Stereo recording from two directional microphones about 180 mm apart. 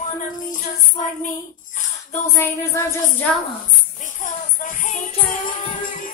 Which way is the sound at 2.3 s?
15° left (ahead or behind).